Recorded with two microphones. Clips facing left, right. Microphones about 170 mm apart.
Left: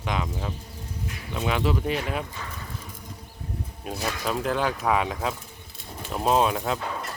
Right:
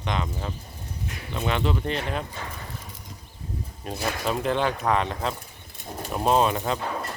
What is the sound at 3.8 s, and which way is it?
Speech, 5° left (ahead or behind).